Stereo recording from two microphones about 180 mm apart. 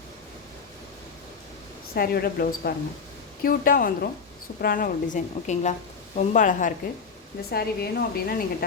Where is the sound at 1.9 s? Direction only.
60° left (ahead or behind).